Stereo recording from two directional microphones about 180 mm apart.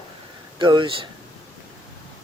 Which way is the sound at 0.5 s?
25° right (ahead or behind).